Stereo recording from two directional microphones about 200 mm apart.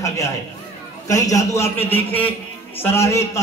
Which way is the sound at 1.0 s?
15° left (ahead or behind).